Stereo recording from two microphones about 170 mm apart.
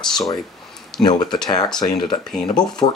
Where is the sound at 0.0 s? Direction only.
5° left (ahead or behind).